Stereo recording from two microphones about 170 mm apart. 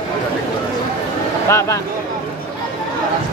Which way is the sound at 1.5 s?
15° left (ahead or behind).